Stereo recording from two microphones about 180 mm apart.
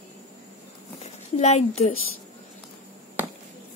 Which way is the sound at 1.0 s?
35° left (ahead or behind).